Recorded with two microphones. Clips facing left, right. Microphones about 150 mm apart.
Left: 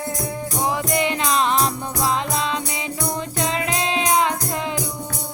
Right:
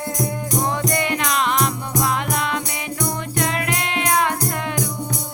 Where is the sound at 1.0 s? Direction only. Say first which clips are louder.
Left 1 dB; 25° left (ahead or behind).